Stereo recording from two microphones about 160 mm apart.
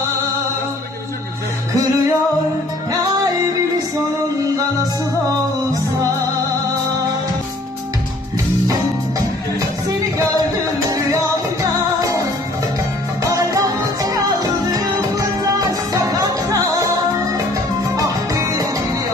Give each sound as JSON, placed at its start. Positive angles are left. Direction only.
{"t": 12.0, "sound": "music", "side_deg": -20}
{"t": 13.3, "sound": "music", "side_deg": -20}